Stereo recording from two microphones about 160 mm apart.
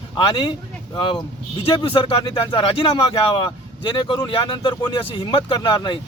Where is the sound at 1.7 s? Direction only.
30° left (ahead or behind).